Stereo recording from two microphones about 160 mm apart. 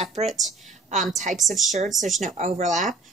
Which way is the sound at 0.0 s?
45° right (ahead or behind).